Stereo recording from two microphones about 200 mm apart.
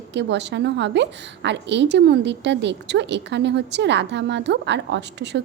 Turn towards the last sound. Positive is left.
turn(degrees=-60)  # may be behind; listen again after turning